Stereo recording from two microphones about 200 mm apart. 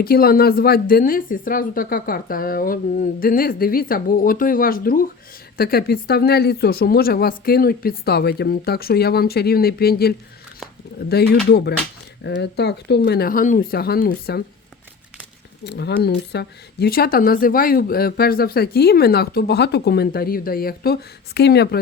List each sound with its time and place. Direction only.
0.0 s speech: 50° left (ahead or behind)
15.6 s speech: 55° left (ahead or behind)